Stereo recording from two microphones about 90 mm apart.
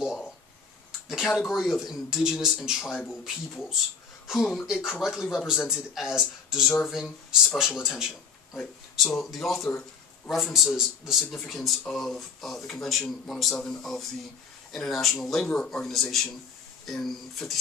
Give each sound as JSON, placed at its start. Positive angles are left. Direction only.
{"t": 1.0, "sound": "a sound", "side_deg": -5}
{"t": 1.5, "sound": "speech", "side_deg": 0}
{"t": 5.0, "sound": "speech", "side_deg": -5}
{"t": 9.7, "sound": "a man's voice", "side_deg": 20}
{"t": 10.3, "sound": "speech", "side_deg": 0}